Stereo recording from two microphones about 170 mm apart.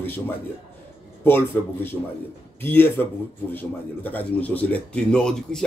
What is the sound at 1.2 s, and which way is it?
Speech, 10° left (ahead or behind).